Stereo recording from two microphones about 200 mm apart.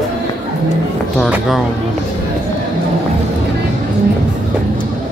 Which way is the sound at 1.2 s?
Centre (ahead or behind).